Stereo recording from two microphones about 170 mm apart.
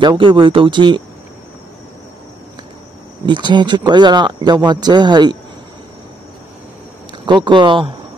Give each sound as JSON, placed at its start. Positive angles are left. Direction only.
{"t": 0.0, "sound": "speech", "side_deg": -30}
{"t": 3.3, "sound": "speech", "side_deg": -25}
{"t": 7.1, "sound": "speech", "side_deg": -25}